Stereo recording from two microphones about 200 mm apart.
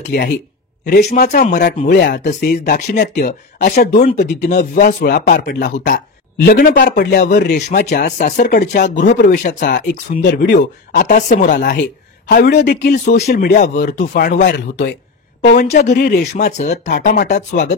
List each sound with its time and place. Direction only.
0.1 s speech: 55° left (ahead or behind)
2.2 s speech: 40° left (ahead or behind)
7.5 s speech: 40° left (ahead or behind)
11.1 s speech: 40° left (ahead or behind)
12.3 s speech: 55° left (ahead or behind)
14.5 s speech: 60° left (ahead or behind)
15.4 s speech: 45° left (ahead or behind)
16.4 s speech: 35° left (ahead or behind)